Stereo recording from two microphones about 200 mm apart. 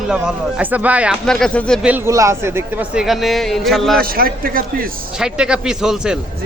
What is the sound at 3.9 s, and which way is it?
Speech, 50° right (ahead or behind).